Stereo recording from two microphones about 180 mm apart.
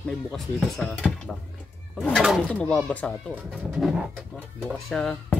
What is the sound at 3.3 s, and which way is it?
Speech, 5° right (ahead or behind).